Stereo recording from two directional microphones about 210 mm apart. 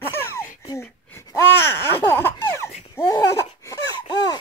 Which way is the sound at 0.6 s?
15° left (ahead or behind).